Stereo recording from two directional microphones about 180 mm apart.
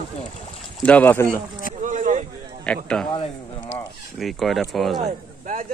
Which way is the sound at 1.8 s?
45° right (ahead or behind).